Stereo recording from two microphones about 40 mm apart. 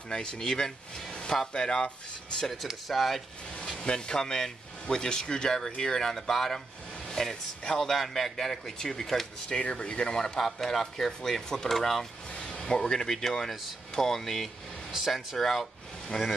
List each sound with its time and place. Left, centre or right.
0.1 s a man's voice: left
1.1 s a sound: left
1.5 s speech: left
2.5 s speech: centre
3.6 s a man's voice: centre
9.5 s a man's voice: left
12.4 s speech: left
14.9 s speech: centre
15.3 s a man's voice: centre